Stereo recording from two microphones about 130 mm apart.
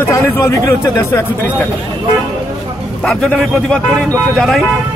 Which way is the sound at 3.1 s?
5° left (ahead or behind).